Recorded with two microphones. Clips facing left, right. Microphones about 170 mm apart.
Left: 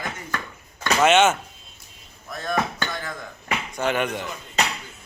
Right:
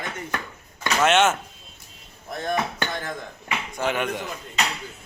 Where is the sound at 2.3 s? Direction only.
25° right (ahead or behind).